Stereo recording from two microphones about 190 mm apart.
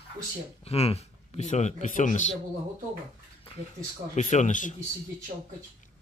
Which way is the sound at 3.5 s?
30° left (ahead or behind).